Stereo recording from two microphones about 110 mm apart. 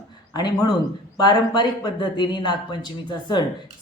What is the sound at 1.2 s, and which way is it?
A woman's voice, 40° left (ahead or behind).